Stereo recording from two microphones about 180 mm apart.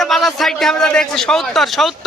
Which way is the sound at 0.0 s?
Centre (ahead or behind).